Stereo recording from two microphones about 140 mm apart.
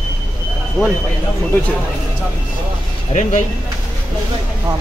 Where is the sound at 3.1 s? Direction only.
60° left (ahead or behind).